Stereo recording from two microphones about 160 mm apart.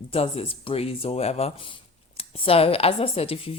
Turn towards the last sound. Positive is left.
turn(degrees=40)  # may be behind; listen again after turning